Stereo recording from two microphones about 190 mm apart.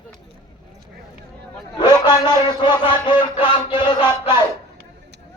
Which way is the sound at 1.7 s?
20° left (ahead or behind).